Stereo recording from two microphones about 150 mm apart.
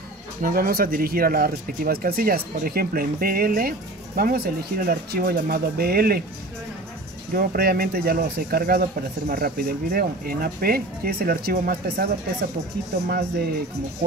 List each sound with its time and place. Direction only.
0.4 s speech: 80° right
7.3 s speech: 90° right
13.1 s speech: 90° right